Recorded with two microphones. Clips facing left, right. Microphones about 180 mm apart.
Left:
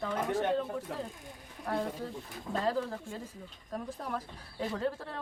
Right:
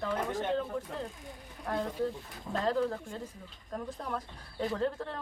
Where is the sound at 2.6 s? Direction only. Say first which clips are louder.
Right 3 dB; 5° left (ahead or behind).